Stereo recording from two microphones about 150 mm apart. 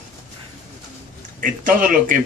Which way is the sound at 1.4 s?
65° right (ahead or behind).